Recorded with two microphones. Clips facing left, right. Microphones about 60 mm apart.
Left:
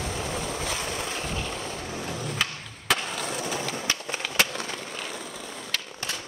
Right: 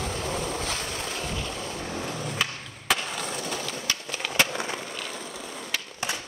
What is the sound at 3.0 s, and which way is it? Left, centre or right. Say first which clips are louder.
Skateboard: left 1 dB; centre.